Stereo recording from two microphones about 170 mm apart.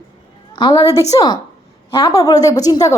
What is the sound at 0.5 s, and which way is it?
A woman's voice, 25° left (ahead or behind).